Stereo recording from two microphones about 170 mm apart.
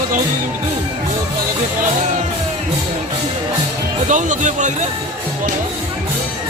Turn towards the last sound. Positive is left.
turn(degrees=-45)  # may be behind; listen again after turning